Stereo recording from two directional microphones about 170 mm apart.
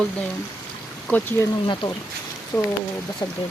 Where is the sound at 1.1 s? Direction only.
10° left (ahead or behind).